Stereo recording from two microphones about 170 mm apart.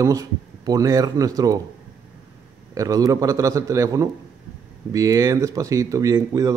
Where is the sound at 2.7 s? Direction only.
20° right (ahead or behind).